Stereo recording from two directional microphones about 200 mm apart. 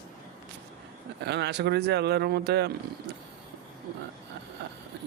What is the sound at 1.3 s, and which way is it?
Speech, 55° right (ahead or behind).